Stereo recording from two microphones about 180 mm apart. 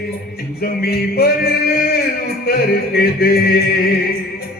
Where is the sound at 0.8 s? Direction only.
60° left (ahead or behind).